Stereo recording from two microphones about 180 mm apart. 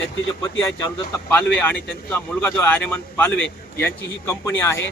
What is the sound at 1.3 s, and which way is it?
A man's voice, 10° left (ahead or behind).